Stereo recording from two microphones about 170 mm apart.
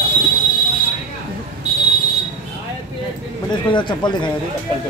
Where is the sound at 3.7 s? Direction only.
25° left (ahead or behind).